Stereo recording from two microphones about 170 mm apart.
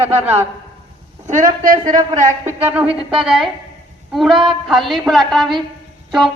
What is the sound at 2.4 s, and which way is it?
A woman's voice, 10° right (ahead or behind).